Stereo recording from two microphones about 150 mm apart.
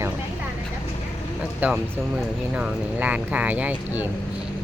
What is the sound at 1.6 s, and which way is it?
Speech, 10° right (ahead or behind).